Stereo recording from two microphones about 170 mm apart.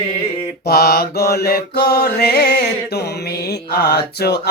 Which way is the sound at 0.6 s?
65° left (ahead or behind).